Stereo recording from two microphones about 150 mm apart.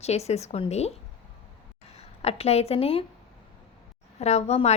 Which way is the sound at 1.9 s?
45° left (ahead or behind).